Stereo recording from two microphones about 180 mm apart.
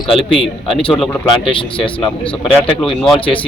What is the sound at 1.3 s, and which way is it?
Speech, 30° left (ahead or behind).